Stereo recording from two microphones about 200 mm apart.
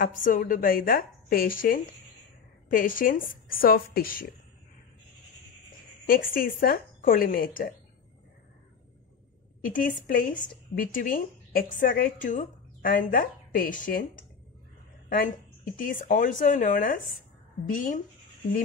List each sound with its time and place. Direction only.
0.0 s speech: 45° left (ahead or behind)
6.0 s speech: 45° left (ahead or behind)
9.7 s speech: 45° left (ahead or behind)